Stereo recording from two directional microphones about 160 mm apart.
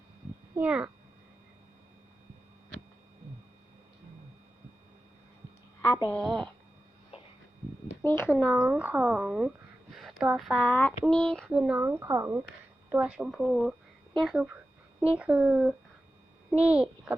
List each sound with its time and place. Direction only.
0.5 s speech: 10° right (ahead or behind)
6.1 s speech: 5° left (ahead or behind)
7.1 s a sound: 40° left (ahead or behind)
8.0 s speech: 15° left (ahead or behind)
8.5 s speech: 10° right (ahead or behind)
9.9 s a sound: centre (ahead or behind)
10.3 s a child's voice: centre (ahead or behind)